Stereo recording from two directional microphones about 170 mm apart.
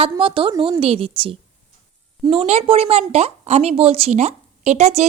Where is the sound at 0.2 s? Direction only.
30° right (ahead or behind).